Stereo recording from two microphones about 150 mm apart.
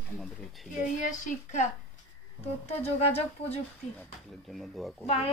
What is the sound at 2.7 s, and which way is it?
Speech, 45° left (ahead or behind).